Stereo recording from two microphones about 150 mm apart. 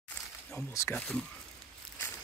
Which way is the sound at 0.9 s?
5° left (ahead or behind).